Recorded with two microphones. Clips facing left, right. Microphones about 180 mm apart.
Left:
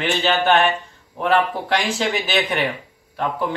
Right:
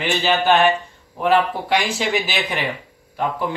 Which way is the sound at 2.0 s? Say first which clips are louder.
Left 1 dB; centre (ahead or behind).